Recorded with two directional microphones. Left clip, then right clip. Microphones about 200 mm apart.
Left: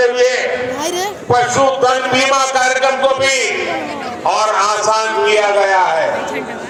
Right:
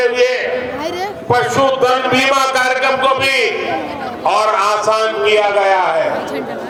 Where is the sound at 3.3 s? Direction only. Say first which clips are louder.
Right 1 dB; 35° left (ahead or behind).